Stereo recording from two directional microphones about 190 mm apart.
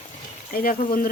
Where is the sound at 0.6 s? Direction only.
50° left (ahead or behind).